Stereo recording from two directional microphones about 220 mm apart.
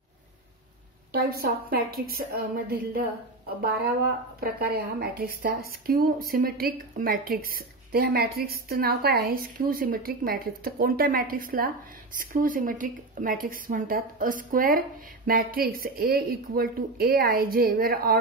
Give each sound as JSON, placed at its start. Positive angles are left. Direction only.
{"t": 1.1, "sound": "speech", "side_deg": -45}
{"t": 4.4, "sound": "speech", "side_deg": -45}